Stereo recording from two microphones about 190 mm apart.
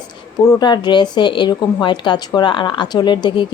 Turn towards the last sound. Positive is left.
turn(degrees=25)  # may be behind; listen again after turning